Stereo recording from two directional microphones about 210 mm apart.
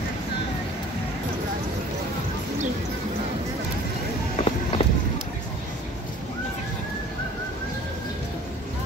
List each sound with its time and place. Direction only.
4.4 s run: 30° left (ahead or behind)
4.8 s vehicle: 30° left (ahead or behind)